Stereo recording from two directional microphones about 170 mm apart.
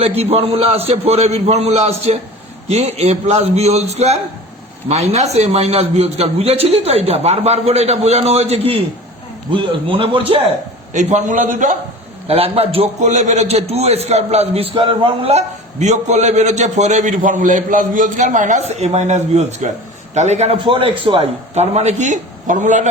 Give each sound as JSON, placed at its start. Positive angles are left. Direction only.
{"t": 0.0, "sound": "a man's voice", "side_deg": -35}
{"t": 9.9, "sound": "a man's voice", "side_deg": -35}
{"t": 10.9, "sound": "a man's voice", "side_deg": -45}
{"t": 12.3, "sound": "a man's voice", "side_deg": -35}